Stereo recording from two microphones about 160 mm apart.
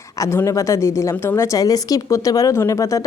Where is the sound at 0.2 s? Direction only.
20° left (ahead or behind).